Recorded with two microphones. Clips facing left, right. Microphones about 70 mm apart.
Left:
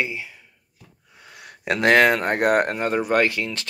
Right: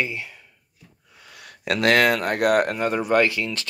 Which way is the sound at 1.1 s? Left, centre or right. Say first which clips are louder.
Left 1 dB; left.